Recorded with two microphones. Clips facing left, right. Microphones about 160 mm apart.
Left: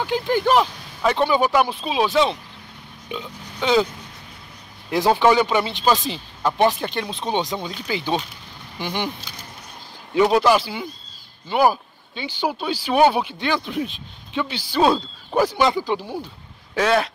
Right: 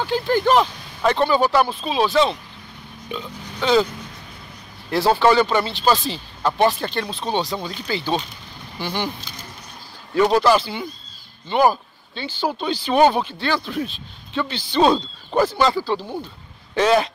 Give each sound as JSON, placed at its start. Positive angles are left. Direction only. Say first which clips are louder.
{"t": 0.0, "sound": "speech", "louder": "right 1 dB", "side_deg": 15}
{"t": 4.9, "sound": "speech", "louder": "even", "side_deg": 15}
{"t": 10.3, "sound": "speech", "louder": "even", "side_deg": 10}
{"t": 16.7, "sound": "speech", "louder": "right 2 dB", "side_deg": 0}